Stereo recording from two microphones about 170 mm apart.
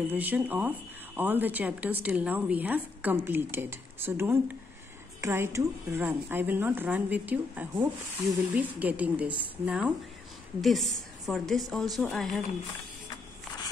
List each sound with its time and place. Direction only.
0.1 s a woman's voice: 10° right (ahead or behind)